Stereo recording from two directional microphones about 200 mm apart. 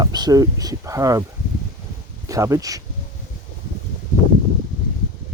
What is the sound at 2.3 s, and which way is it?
Speech, 15° right (ahead or behind).